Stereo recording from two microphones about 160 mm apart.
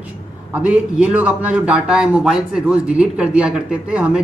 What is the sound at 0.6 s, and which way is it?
A man's voice, 10° right (ahead or behind).